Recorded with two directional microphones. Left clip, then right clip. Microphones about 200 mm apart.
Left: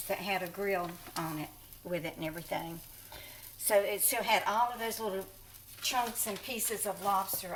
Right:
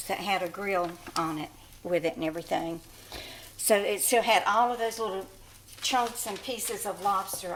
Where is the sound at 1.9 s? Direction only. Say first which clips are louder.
Right 9 dB; 55° right (ahead or behind).